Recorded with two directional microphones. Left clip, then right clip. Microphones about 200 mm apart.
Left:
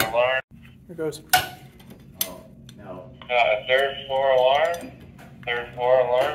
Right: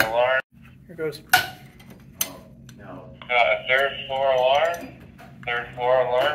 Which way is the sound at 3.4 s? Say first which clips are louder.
Left 1 dB; centre (ahead or behind).